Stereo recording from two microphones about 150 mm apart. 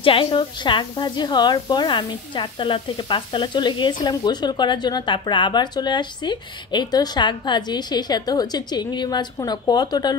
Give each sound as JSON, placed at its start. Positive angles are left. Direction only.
{"t": 0.0, "sound": "a woman's voice", "side_deg": 35}